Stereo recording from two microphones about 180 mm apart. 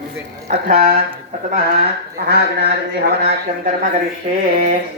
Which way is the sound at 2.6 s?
65° right (ahead or behind).